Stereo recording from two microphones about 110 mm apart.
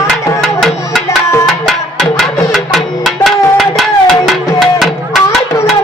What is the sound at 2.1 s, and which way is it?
Music, centre (ahead or behind).